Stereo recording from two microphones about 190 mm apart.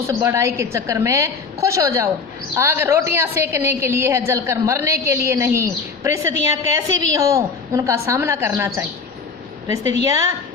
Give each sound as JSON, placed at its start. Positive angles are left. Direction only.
{"t": 0.1, "sound": "a woman's voice", "side_deg": -15}
{"t": 10.1, "sound": "a woman's voice", "side_deg": -15}